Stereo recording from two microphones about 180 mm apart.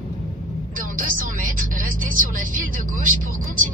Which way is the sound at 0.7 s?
50° right (ahead or behind).